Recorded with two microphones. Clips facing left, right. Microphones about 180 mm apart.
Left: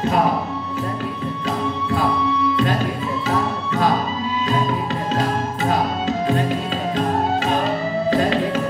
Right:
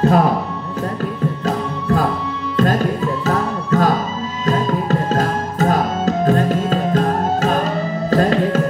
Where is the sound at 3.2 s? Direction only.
40° right (ahead or behind).